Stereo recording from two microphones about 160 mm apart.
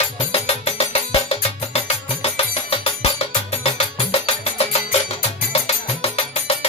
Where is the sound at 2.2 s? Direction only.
40° left (ahead or behind).